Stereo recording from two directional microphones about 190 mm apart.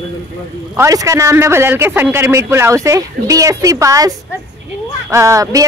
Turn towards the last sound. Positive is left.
turn(degrees=-15)  # may be behind; listen again after turning